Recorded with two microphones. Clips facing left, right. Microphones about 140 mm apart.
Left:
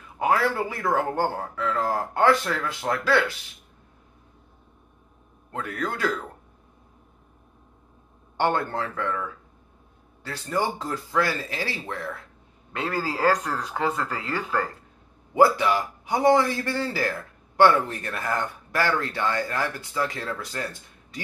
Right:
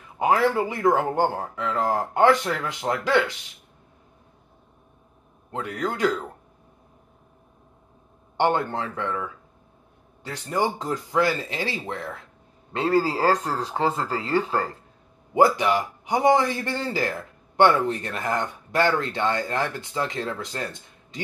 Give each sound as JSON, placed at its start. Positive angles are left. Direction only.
{"t": 0.2, "sound": "speech", "side_deg": -20}
{"t": 5.5, "sound": "a man's voice", "side_deg": -20}
{"t": 8.4, "sound": "a man's voice", "side_deg": -20}
{"t": 15.3, "sound": "a man's voice", "side_deg": -20}